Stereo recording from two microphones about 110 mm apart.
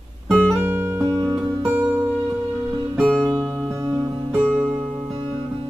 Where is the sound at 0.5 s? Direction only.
20° right (ahead or behind).